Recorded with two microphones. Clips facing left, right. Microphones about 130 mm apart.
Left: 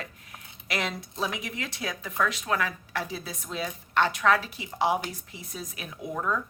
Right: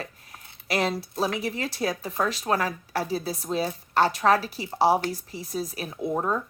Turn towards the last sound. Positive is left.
turn(degrees=-35)  # may be behind; listen again after turning